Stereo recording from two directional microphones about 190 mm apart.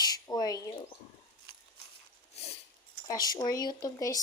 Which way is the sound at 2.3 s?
30° left (ahead or behind).